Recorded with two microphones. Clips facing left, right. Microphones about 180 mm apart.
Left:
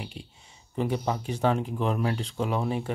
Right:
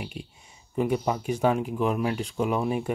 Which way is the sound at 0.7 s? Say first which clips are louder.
Right 3 dB; 15° right (ahead or behind).